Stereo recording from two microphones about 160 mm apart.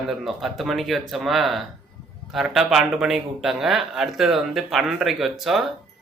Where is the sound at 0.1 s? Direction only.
Centre (ahead or behind).